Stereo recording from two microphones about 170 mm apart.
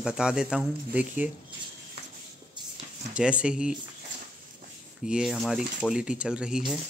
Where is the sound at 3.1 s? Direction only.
5° right (ahead or behind).